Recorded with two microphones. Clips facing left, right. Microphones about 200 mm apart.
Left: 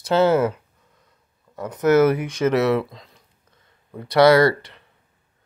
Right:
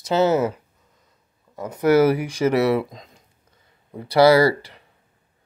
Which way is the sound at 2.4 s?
15° right (ahead or behind).